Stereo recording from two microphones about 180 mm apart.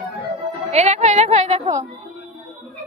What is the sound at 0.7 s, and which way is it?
Speech, 40° right (ahead or behind).